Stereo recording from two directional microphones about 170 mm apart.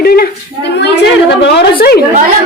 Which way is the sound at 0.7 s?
85° left.